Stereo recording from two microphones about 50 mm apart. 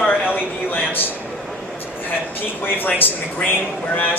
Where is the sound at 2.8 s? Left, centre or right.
Left.